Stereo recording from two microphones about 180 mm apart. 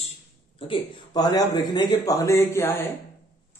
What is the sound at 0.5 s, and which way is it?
A man's voice, 30° left (ahead or behind).